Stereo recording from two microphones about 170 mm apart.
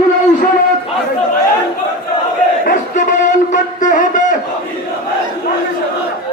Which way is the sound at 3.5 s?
50° left (ahead or behind).